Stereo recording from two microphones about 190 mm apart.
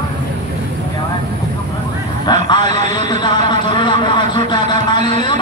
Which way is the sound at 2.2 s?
25° left (ahead or behind).